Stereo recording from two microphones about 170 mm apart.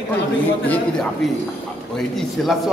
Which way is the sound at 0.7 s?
5° left (ahead or behind).